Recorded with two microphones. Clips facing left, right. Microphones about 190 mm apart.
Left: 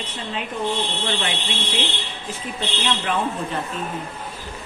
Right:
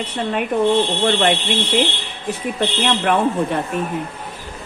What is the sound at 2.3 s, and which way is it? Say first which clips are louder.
A woman's voice: right 8 dB; 65° right (ahead or behind).